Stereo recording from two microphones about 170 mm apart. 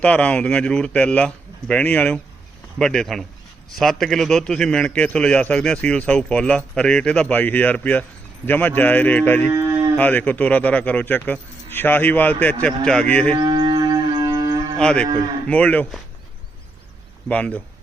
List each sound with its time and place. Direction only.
0.0 s a man's voice: 5° left (ahead or behind)
9.5 s a sound: 20° right (ahead or behind)
10.0 s speech: 10° left (ahead or behind)
13.3 s livestock: 25° right (ahead or behind)
14.8 s a man's voice: 5° left (ahead or behind)
17.2 s speech: 5° left (ahead or behind)